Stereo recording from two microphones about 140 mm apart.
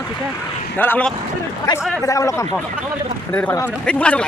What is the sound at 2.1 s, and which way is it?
Speech, 20° left (ahead or behind).